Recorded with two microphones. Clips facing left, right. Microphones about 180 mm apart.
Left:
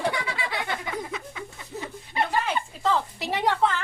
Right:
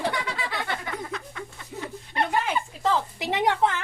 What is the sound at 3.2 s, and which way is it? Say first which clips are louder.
Speech: right 2 dB; 20° right (ahead or behind).